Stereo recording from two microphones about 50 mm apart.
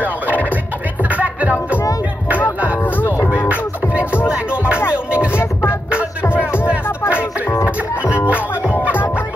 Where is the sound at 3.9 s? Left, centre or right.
Right.